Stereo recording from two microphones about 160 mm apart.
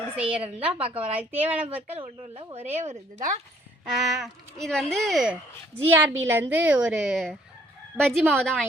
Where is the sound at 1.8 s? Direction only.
35° right (ahead or behind).